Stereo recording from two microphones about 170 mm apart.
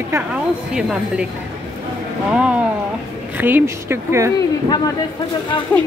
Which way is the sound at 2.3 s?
5° right (ahead or behind).